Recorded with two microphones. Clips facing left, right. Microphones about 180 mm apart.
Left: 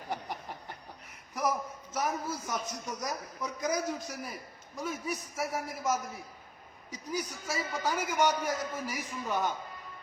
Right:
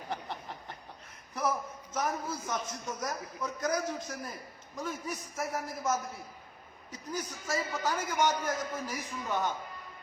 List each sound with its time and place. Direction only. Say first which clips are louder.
1.4 s a man's voice: left 1 dB; 10° left (ahead or behind)